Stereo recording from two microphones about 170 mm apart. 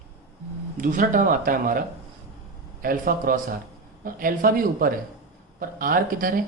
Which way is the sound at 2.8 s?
55° right (ahead or behind).